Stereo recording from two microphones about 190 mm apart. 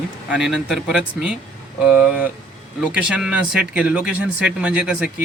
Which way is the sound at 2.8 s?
5° right (ahead or behind).